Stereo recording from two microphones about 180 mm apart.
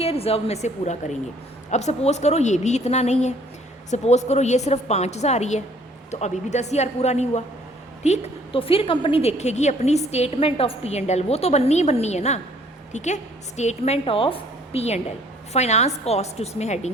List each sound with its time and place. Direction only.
0.0 s a woman's voice: 35° left (ahead or behind)